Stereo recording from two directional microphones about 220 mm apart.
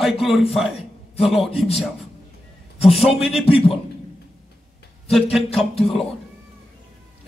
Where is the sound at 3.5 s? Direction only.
25° left (ahead or behind).